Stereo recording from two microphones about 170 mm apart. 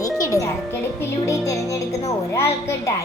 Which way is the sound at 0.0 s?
20° left (ahead or behind).